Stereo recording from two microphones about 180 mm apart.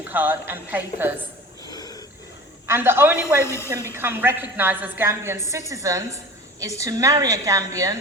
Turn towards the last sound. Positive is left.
turn(degrees=-20)  # may be behind; listen again after turning